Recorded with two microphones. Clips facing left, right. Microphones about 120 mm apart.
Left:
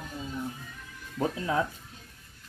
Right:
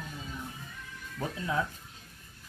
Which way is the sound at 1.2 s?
15° left (ahead or behind).